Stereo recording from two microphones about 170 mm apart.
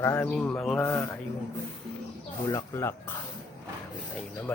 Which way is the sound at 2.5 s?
15° left (ahead or behind).